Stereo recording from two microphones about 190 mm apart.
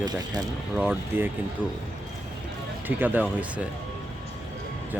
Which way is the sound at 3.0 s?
10° right (ahead or behind).